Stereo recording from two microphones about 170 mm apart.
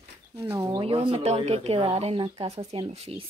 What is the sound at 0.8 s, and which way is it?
Speech, 30° right (ahead or behind).